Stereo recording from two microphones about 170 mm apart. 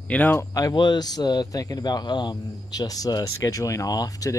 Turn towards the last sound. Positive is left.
turn(degrees=20)  # may be behind; listen again after turning